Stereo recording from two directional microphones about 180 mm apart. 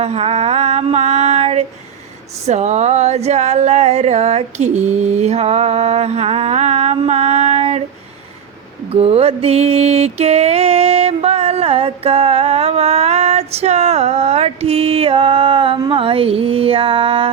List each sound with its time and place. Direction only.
0.0 s mantra: 35° right (ahead or behind)
8.9 s mantra: 35° right (ahead or behind)